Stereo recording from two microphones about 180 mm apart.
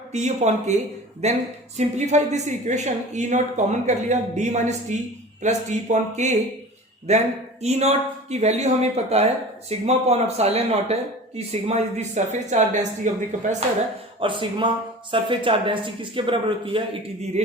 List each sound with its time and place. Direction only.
0.1 s speech: 40° right (ahead or behind)
14.2 s a man's voice: 30° right (ahead or behind)